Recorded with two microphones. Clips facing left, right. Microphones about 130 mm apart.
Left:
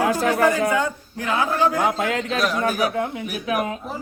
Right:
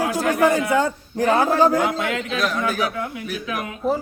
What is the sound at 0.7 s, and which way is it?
A man's voice, 40° right (ahead or behind).